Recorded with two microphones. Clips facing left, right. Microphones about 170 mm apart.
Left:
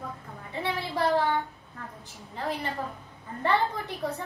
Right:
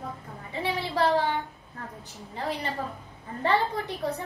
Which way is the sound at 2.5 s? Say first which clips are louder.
Even; 15° right (ahead or behind).